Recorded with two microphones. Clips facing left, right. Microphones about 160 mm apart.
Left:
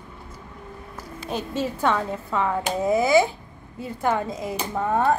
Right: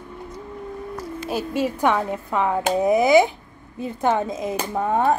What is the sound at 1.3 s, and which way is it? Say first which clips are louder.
Speech: right 3 dB; 10° right (ahead or behind).